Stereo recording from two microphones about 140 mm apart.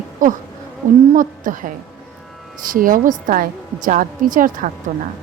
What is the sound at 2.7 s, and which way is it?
A woman's voice, 80° right.